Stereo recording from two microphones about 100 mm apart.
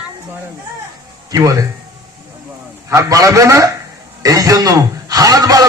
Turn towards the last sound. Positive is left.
turn(degrees=-40)  # may be behind; listen again after turning